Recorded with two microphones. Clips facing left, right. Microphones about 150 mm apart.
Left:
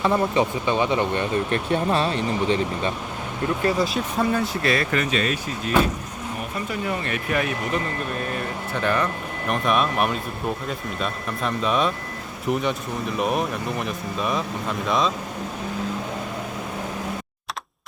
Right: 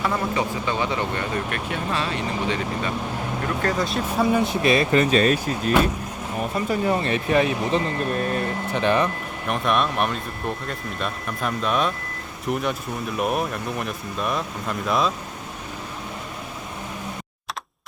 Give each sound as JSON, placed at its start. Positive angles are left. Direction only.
{"t": 0.0, "sound": "speech", "side_deg": 20}
{"t": 3.8, "sound": "speech", "side_deg": 0}
{"t": 4.3, "sound": "speech", "side_deg": -15}
{"t": 5.1, "sound": "speech", "side_deg": -40}
{"t": 9.5, "sound": "speech", "side_deg": 0}